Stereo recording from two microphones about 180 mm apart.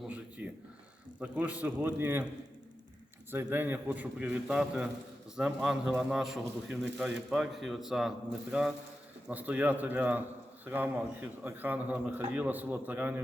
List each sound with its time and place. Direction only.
0.1 s a sound: 5° right (ahead or behind)
1.2 s a man's voice: 10° right (ahead or behind)
3.3 s a man's voice: 10° right (ahead or behind)
9.3 s a man's voice: 10° right (ahead or behind)